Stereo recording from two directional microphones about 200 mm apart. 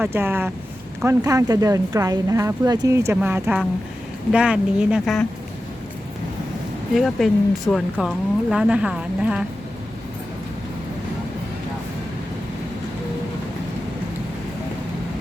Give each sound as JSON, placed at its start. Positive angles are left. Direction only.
{"t": 0.0, "sound": "speech", "side_deg": -10}
{"t": 6.9, "sound": "speech", "side_deg": 0}